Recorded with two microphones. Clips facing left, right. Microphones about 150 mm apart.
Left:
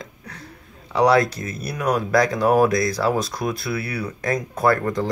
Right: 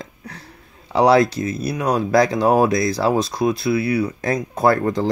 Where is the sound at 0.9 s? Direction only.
30° right (ahead or behind).